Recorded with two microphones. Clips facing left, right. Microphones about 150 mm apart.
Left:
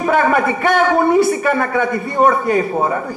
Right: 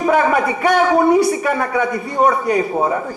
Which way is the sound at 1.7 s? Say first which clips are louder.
Left 1 dB; 50° left (ahead or behind).